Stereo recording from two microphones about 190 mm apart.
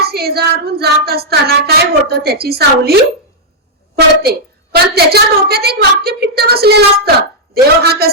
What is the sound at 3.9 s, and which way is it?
A woman's voice, 55° right (ahead or behind).